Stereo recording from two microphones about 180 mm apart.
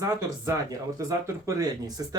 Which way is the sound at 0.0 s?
20° right (ahead or behind).